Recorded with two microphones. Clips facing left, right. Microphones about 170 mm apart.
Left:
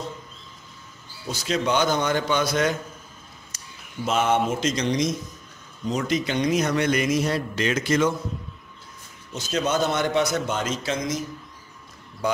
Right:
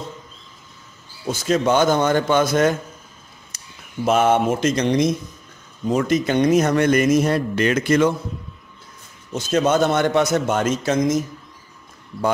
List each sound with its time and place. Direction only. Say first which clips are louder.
1.2 s speech: right 6 dB; 50° right (ahead or behind)
9.3 s speech: right 6 dB; 50° right (ahead or behind)